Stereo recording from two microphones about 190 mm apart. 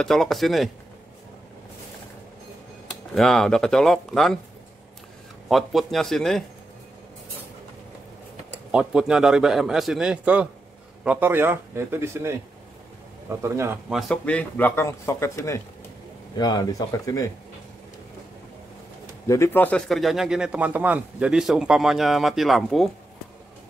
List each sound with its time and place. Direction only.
0.0 s a man's voice: centre (ahead or behind)
3.2 s a man's voice: centre (ahead or behind)
5.5 s a man's voice: centre (ahead or behind)
8.7 s a man's voice: 5° right (ahead or behind)
13.9 s a man's voice: 5° left (ahead or behind)
19.2 s a man's voice: 15° left (ahead or behind)